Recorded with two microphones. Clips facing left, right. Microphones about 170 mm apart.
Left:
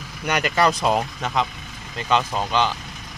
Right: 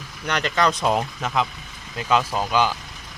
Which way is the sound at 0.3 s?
10° left (ahead or behind).